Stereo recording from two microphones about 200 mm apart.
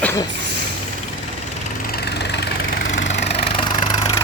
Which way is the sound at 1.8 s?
50° left (ahead or behind).